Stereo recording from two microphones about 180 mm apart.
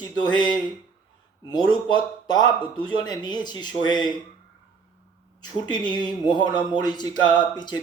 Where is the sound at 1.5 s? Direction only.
25° left (ahead or behind).